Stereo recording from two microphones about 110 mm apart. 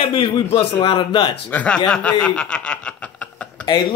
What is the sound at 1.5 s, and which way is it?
Speech, 15° left (ahead or behind).